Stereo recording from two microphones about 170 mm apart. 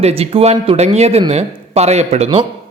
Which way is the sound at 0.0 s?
35° right (ahead or behind).